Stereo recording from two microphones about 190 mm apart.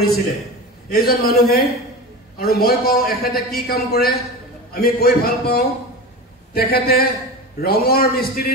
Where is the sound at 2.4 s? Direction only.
55° left (ahead or behind).